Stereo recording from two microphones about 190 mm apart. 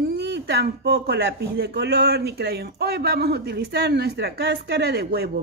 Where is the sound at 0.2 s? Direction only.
60° right (ahead or behind).